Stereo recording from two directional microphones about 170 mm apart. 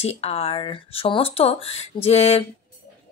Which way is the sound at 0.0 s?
35° left (ahead or behind).